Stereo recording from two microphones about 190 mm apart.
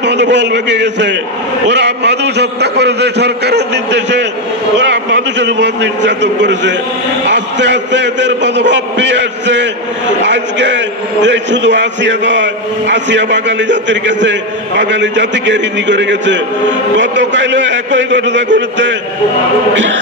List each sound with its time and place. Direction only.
0.0 s a man's voice: 65° right (ahead or behind)